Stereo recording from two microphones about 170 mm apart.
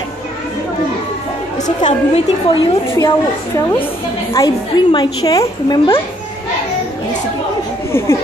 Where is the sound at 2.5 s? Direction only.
25° left (ahead or behind).